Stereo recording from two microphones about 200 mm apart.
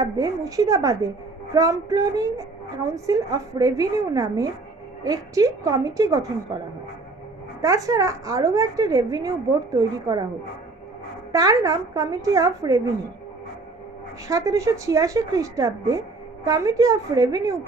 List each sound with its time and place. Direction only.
0.0 s a woman's voice: 15° right (ahead or behind)
7.6 s a woman's voice: 15° right (ahead or behind)
11.3 s a woman's voice: 15° right (ahead or behind)
14.2 s a woman's voice: 15° right (ahead or behind)